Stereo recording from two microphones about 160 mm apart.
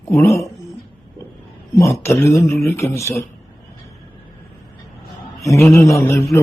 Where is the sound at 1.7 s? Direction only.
20° left (ahead or behind).